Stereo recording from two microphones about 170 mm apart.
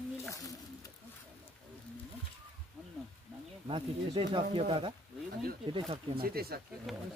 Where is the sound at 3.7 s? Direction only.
30° right (ahead or behind).